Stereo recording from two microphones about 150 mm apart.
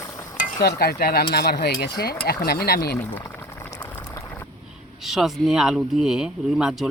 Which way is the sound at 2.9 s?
10° left (ahead or behind).